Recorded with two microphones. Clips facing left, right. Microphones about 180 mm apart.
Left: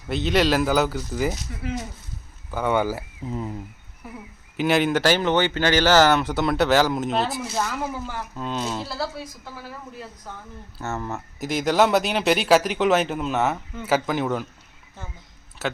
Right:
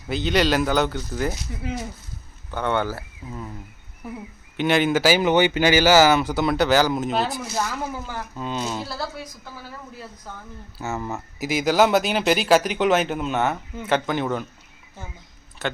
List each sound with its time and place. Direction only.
0.1 s speech: centre (ahead or behind)
2.5 s speech: 5° left (ahead or behind)
3.2 s speech: 20° left (ahead or behind)
4.5 s speech: centre (ahead or behind)
10.8 s speech: centre (ahead or behind)
15.6 s speech: 5° left (ahead or behind)